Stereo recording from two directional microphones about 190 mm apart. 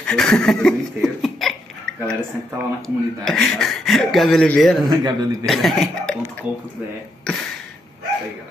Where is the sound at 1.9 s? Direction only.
65° right (ahead or behind).